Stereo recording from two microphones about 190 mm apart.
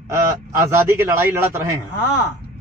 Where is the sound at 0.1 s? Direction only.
15° right (ahead or behind).